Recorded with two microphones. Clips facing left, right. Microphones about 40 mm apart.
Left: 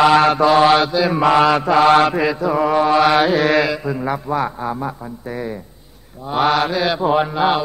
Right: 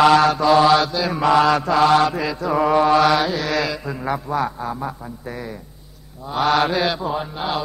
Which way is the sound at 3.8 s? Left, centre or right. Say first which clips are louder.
Left 3 dB; centre.